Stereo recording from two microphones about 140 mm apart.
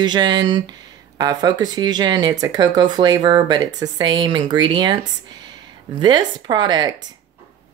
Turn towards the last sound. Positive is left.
turn(degrees=-30)  # may be behind; listen again after turning